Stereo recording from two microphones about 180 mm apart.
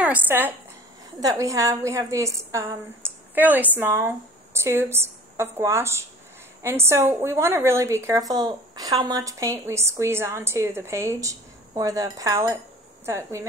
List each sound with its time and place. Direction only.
0.0 s a woman's voice: 10° right (ahead or behind)